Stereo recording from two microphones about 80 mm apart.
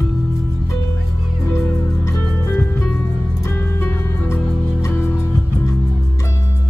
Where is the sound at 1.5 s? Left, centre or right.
Left.